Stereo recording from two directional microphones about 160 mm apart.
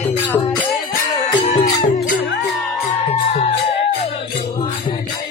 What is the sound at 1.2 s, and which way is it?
Music, 40° left (ahead or behind).